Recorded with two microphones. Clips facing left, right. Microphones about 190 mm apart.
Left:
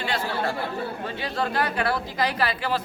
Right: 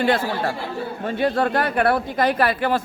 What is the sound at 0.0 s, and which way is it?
Speech, 55° right (ahead or behind).